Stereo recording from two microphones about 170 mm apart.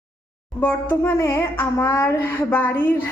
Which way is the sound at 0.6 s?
15° left (ahead or behind).